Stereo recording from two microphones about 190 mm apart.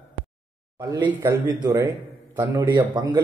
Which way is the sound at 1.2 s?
10° right (ahead or behind).